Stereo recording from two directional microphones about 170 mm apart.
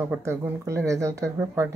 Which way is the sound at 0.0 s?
15° right (ahead or behind).